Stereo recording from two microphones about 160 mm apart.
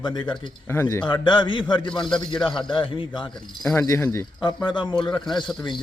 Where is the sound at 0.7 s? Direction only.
15° left (ahead or behind).